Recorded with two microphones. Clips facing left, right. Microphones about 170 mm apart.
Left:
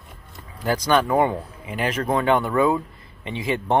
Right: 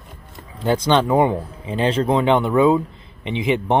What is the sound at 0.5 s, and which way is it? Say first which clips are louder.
Speech: right 3 dB; 25° right (ahead or behind).